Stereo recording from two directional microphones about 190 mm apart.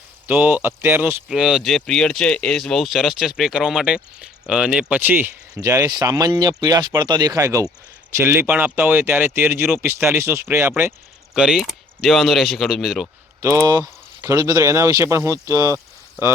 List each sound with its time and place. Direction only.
0.3 s speech: 10° right (ahead or behind)
13.4 s speech: 15° right (ahead or behind)